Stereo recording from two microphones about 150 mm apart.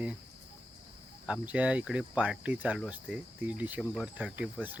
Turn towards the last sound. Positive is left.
turn(degrees=-10)  # may be behind; listen again after turning